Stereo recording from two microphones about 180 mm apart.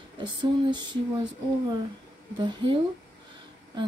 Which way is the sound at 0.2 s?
25° right (ahead or behind).